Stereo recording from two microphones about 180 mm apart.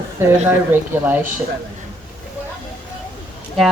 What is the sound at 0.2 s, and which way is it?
Speech, 15° right (ahead or behind).